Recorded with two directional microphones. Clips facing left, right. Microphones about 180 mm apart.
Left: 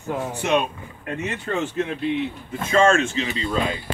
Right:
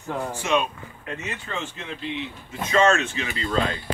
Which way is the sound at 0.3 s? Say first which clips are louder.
Left 2 dB; 60° left (ahead or behind).